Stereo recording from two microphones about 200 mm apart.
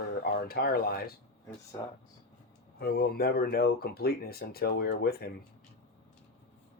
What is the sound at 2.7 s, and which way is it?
Speech, 50° left (ahead or behind).